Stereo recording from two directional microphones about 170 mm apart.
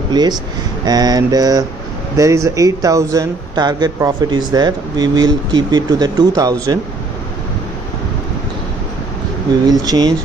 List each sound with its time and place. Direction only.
0.1 s speech: 25° right (ahead or behind)
9.7 s speech: 20° right (ahead or behind)